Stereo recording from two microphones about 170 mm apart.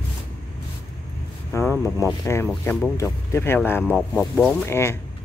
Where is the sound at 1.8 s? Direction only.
20° left (ahead or behind).